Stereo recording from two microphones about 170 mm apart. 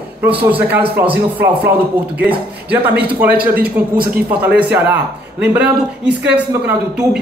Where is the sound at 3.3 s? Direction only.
65° right (ahead or behind).